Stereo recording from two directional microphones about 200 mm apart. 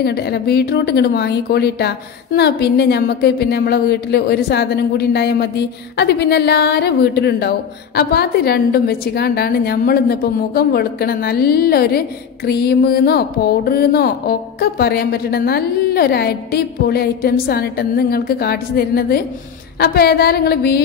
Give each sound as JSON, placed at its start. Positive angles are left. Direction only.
{"t": 0.0, "sound": "a woman's voice", "side_deg": 55}